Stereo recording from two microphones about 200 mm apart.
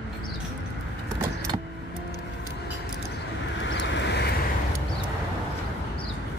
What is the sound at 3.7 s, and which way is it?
Vehicle, 60° left (ahead or behind).